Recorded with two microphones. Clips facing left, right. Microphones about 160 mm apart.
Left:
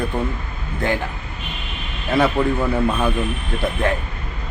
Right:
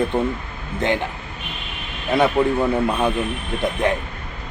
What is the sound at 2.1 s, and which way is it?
Speech, 20° right (ahead or behind).